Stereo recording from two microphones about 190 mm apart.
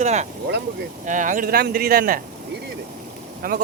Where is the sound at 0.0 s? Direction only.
35° right (ahead or behind).